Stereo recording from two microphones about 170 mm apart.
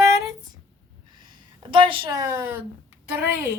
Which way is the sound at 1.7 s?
30° right (ahead or behind).